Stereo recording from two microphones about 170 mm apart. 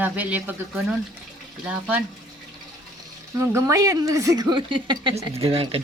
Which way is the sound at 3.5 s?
20° right (ahead or behind).